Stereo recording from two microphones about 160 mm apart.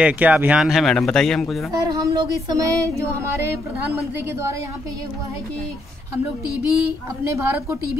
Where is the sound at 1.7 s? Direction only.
25° right (ahead or behind).